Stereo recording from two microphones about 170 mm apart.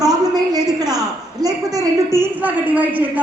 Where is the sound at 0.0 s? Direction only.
20° right (ahead or behind).